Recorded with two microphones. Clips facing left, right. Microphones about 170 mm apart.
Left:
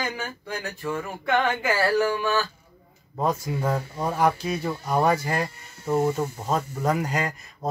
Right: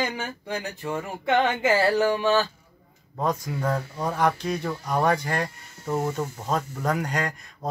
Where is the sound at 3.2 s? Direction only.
10° left (ahead or behind).